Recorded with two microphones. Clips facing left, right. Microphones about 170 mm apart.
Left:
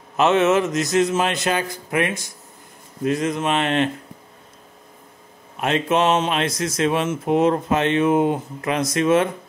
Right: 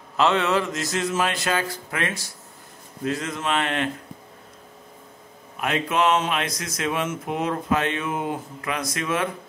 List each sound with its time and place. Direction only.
0.2 s speech: 20° left (ahead or behind)
5.6 s speech: 25° left (ahead or behind)